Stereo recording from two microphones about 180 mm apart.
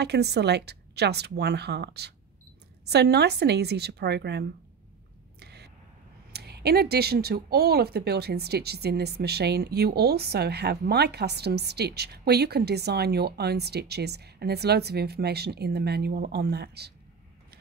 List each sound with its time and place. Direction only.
0.0 s speech: 65° right (ahead or behind)
5.4 s a sound: 65° right (ahead or behind)
6.3 s speech: 65° right (ahead or behind)